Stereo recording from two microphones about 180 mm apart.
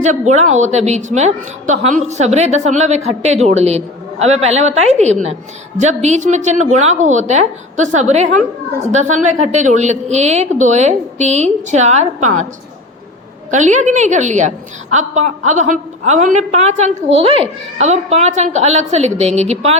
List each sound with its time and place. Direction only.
0.0 s a woman's voice: 40° right (ahead or behind)
13.5 s a woman's voice: 40° right (ahead or behind)